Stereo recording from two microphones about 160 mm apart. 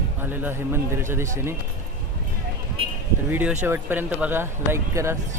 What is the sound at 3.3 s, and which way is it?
Speech, 10° right (ahead or behind).